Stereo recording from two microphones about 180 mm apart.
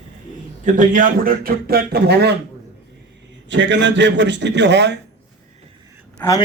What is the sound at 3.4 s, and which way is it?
A man's voice, 90° right.